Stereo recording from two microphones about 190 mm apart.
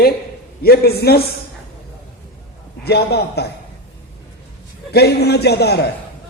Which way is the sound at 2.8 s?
60° left (ahead or behind).